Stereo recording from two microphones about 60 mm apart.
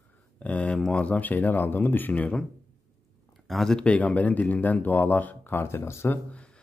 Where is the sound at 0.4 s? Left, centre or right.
Left.